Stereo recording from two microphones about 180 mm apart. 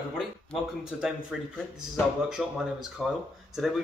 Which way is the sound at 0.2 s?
Centre (ahead or behind).